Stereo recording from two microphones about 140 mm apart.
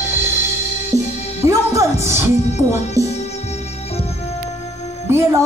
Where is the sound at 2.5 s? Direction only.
55° left (ahead or behind).